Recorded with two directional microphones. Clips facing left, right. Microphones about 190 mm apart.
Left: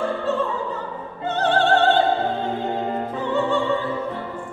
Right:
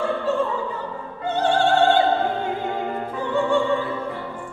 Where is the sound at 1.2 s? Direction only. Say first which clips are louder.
Even; 10° right (ahead or behind).